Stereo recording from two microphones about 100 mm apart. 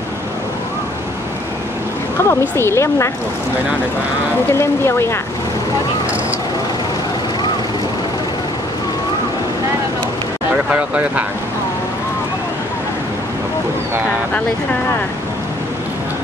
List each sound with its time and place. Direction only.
2.2 s a woman's voice: 25° left (ahead or behind)
4.6 s a woman's voice: 25° left (ahead or behind)
10.7 s speech: 15° right (ahead or behind)